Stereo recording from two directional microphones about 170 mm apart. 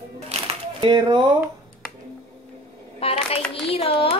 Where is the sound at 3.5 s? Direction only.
35° left (ahead or behind).